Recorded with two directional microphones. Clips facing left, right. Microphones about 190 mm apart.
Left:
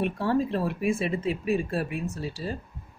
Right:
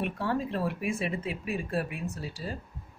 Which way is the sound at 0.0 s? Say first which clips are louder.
Left 5 dB; 30° left (ahead or behind).